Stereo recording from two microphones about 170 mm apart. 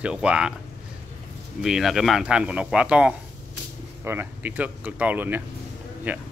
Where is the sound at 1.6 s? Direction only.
Centre (ahead or behind).